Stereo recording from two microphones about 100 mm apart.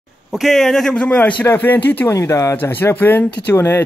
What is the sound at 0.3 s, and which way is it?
A man's voice, centre (ahead or behind).